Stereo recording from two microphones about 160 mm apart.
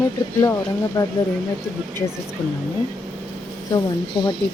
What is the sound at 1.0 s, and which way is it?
Speech, 25° left (ahead or behind).